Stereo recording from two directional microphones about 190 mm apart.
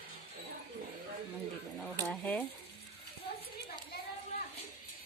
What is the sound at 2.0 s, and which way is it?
Speech, 10° left (ahead or behind).